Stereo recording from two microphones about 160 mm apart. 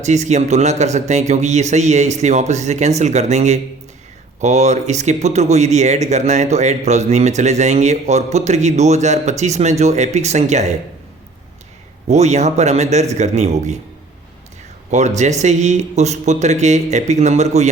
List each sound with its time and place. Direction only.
0.0 s speech: 45° right (ahead or behind)
12.0 s speech: 45° right (ahead or behind)
14.8 s speech: 45° right (ahead or behind)